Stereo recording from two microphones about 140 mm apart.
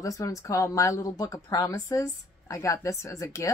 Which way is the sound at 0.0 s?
25° left (ahead or behind).